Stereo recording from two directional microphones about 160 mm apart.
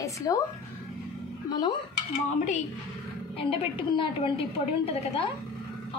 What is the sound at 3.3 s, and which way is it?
A woman's voice, 35° left (ahead or behind).